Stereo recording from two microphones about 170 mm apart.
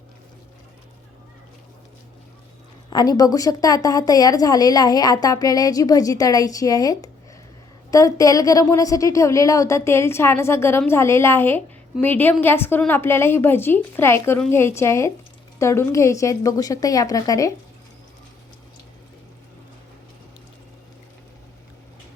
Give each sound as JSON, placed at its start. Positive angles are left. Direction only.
{"t": 2.9, "sound": "a woman's voice", "side_deg": 25}